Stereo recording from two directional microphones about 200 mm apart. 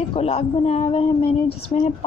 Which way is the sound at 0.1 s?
30° left (ahead or behind).